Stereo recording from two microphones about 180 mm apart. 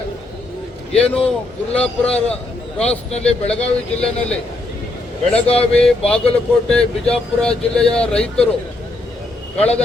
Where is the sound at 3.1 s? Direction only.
35° left (ahead or behind).